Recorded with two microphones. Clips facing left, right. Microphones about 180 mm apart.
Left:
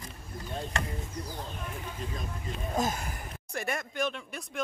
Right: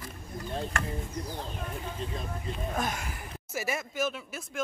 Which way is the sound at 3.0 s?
40° left (ahead or behind).